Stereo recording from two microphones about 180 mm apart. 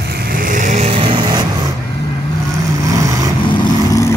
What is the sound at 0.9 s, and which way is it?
Vehicle, 25° right (ahead or behind).